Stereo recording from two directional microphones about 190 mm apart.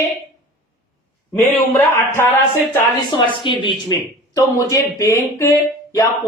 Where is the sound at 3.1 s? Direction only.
25° left (ahead or behind).